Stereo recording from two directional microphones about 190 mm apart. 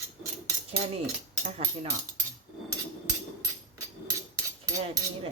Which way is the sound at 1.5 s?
35° right (ahead or behind).